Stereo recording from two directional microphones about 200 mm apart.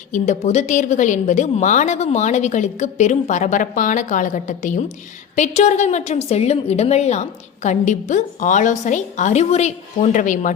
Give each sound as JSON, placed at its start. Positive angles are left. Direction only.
{"t": 0.1, "sound": "a woman's voice", "side_deg": 35}